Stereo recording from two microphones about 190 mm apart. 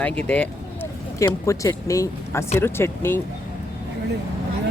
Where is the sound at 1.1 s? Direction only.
20° left (ahead or behind).